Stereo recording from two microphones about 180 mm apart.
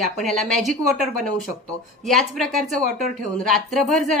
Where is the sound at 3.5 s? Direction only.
Centre (ahead or behind).